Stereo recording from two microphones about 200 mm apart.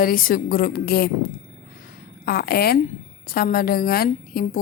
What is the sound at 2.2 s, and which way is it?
A woman's voice, 50° left (ahead or behind).